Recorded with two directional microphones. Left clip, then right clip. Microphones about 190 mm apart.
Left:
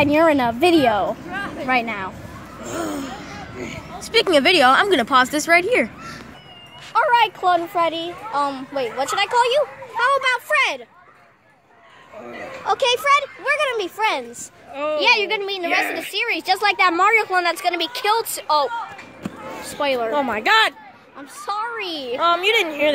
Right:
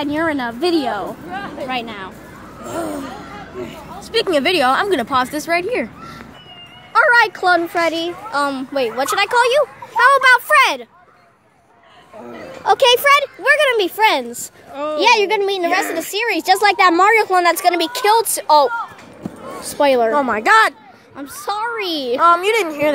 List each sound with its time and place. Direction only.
0.0 s a woman's voice: 35° left (ahead or behind)
2.6 s a woman's voice: 20° left (ahead or behind)
6.9 s a child's voice: 50° right (ahead or behind)
12.6 s a woman's voice: 55° right (ahead or behind)
20.1 s speech: 5° right (ahead or behind)
21.4 s a woman's voice: 55° right (ahead or behind)
22.1 s speech: 10° right (ahead or behind)